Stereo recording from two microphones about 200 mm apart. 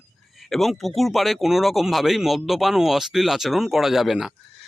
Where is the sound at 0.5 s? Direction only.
Centre (ahead or behind).